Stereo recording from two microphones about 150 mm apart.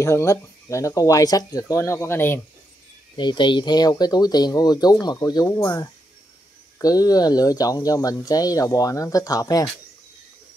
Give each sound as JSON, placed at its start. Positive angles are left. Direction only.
{"t": 0.0, "sound": "speech", "side_deg": 20}
{"t": 3.2, "sound": "speech", "side_deg": 30}